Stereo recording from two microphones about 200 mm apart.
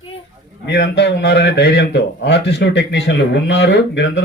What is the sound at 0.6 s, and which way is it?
Speech, 60° left (ahead or behind).